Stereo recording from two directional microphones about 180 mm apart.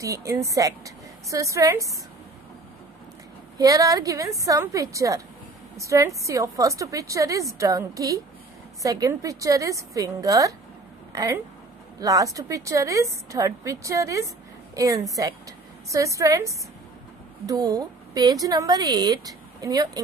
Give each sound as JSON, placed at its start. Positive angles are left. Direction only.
{"t": 0.0, "sound": "a woman's voice", "side_deg": -20}
{"t": 3.5, "sound": "a woman's voice", "side_deg": -20}